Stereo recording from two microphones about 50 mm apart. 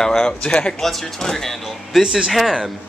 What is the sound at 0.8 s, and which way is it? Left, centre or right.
Speech, centre.